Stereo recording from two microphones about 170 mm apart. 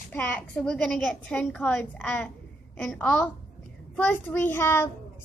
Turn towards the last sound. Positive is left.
turn(degrees=15)  # may be behind; listen again after turning